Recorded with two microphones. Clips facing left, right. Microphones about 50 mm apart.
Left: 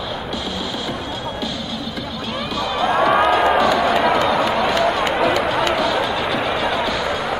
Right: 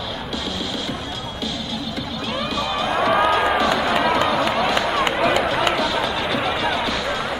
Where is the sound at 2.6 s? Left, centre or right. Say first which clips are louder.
Left 4 dB; centre.